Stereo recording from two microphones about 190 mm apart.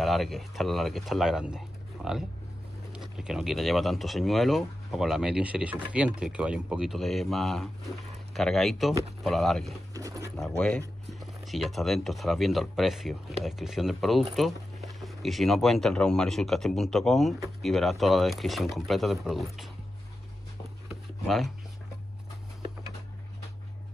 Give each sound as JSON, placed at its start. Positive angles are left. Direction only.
{"t": 0.0, "sound": "speech", "side_deg": 0}
{"t": 9.9, "sound": "speech", "side_deg": -15}
{"t": 10.3, "sound": "speech", "side_deg": 5}